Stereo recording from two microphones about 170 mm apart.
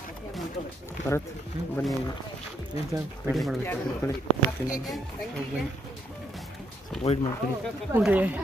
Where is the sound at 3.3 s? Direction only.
Centre (ahead or behind).